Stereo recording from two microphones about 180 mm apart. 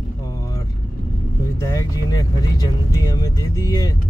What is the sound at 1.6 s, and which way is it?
Speech, 20° left (ahead or behind).